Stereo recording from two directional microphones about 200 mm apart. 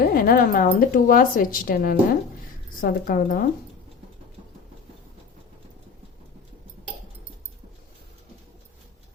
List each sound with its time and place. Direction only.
0.0 s speech: 50° left (ahead or behind)